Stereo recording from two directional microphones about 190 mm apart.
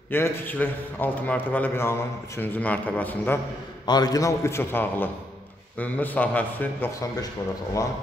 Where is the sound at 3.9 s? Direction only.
20° left (ahead or behind).